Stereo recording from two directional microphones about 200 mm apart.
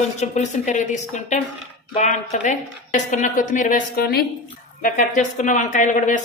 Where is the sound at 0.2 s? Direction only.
35° left (ahead or behind).